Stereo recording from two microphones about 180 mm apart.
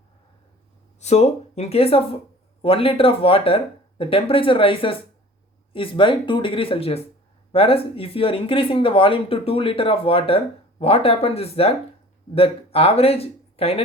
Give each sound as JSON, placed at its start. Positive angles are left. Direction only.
{"t": 0.9, "sound": "speech", "side_deg": 40}